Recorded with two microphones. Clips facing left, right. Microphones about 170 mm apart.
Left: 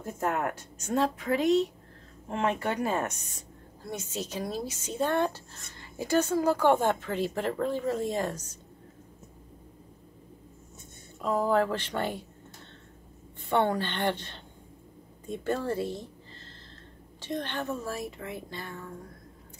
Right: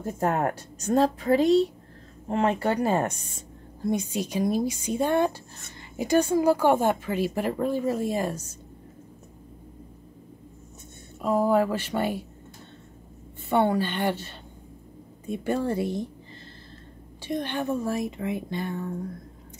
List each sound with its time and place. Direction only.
0.2 s a woman's voice: 35° right (ahead or behind)
3.8 s speech: 15° right (ahead or behind)
11.1 s speech: 10° right (ahead or behind)
13.5 s speech: 10° right (ahead or behind)
17.2 s speech: 10° right (ahead or behind)